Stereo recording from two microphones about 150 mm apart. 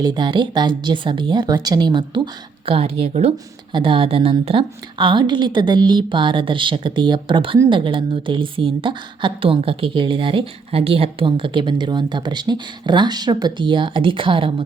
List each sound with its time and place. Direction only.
0.0 s a woman's voice: 30° right (ahead or behind)
3.3 s a woman's voice: 30° right (ahead or behind)